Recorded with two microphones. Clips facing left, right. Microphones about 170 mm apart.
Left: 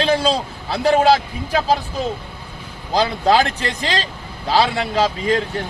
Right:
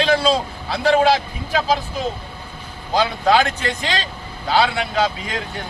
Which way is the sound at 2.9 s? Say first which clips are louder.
Left 1 dB; 35° left (ahead or behind).